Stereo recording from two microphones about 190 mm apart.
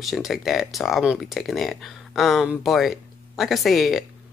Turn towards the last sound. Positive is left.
turn(degrees=0)  # may be behind; listen again after turning